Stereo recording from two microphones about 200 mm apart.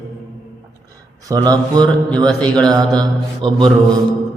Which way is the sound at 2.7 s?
20° right (ahead or behind).